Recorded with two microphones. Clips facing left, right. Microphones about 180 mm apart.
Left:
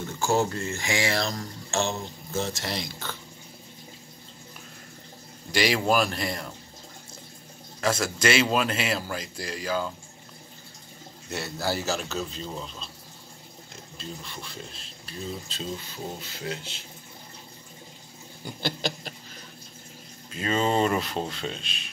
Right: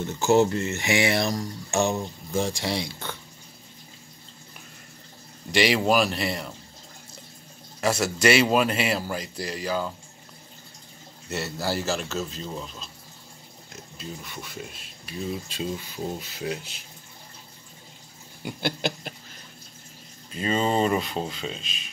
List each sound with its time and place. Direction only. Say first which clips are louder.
0.2 s speech: right 5 dB; 20° right (ahead or behind)
5.6 s speech: right 2 dB; 10° right (ahead or behind)
7.8 s a man's voice: right 3 dB; 5° right (ahead or behind)
11.2 s a man's voice: right 1 dB; centre (ahead or behind)
13.9 s speech: right 1 dB; 5° right (ahead or behind)
18.6 s a sound: right 2 dB; 55° right (ahead or behind)
20.3 s a man's voice: right 1 dB; centre (ahead or behind)